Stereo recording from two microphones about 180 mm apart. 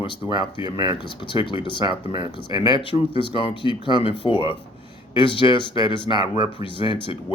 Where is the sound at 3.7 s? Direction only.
30° right (ahead or behind).